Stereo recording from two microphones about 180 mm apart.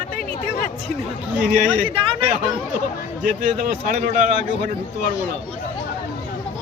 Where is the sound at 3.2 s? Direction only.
45° right (ahead or behind).